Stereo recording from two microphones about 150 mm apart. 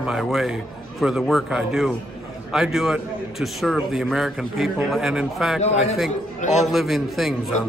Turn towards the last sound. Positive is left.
turn(degrees=0)  # may be behind; listen again after turning